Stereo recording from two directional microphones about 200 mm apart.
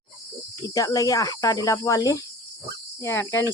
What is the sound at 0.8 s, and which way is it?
Speech, 15° left (ahead or behind).